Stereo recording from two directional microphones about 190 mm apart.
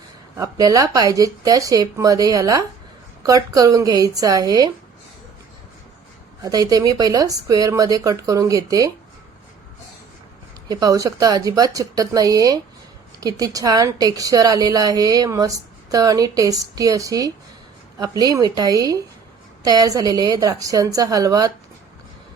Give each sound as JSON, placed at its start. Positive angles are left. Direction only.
{"t": 0.3, "sound": "a woman's voice", "side_deg": -20}
{"t": 6.4, "sound": "a woman's voice", "side_deg": -20}
{"t": 10.7, "sound": "a woman's voice", "side_deg": -20}